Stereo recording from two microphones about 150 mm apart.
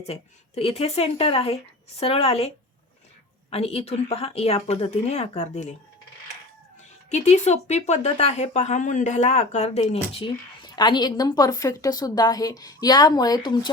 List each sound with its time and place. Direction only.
0.0 s speech: 45° left (ahead or behind)
3.5 s speech: 40° left (ahead or behind)
7.1 s speech: 50° left (ahead or behind); by 13.7 s 30° left (ahead or behind)